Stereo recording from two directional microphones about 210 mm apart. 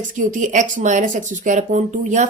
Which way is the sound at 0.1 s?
40° right (ahead or behind).